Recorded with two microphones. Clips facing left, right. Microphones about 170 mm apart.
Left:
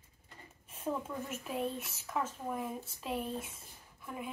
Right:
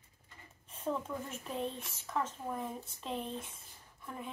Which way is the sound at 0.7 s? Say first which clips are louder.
Even; 5° left (ahead or behind).